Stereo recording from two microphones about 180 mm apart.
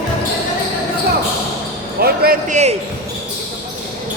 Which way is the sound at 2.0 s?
60° right (ahead or behind).